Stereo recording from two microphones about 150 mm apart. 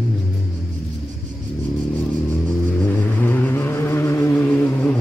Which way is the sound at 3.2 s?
10° left (ahead or behind).